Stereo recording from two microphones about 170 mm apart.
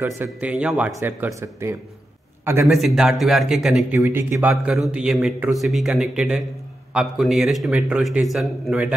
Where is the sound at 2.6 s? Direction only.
Centre (ahead or behind).